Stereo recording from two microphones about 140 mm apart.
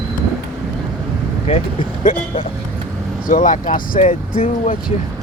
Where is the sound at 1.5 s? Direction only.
50° left (ahead or behind).